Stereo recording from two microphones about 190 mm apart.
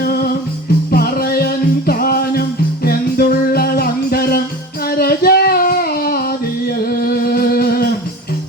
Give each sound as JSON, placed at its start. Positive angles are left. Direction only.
{"t": 0.0, "sound": "music", "side_deg": 50}